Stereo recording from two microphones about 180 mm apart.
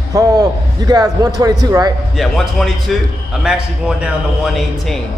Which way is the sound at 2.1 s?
Centre (ahead or behind).